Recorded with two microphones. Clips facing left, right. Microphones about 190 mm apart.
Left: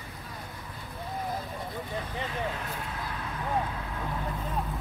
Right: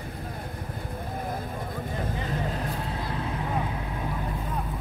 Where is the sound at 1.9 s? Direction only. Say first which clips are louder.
Right 4 dB; 45° right (ahead or behind).